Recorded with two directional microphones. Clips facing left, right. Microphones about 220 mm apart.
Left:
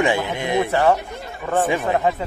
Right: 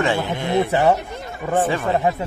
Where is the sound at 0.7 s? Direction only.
15° right (ahead or behind).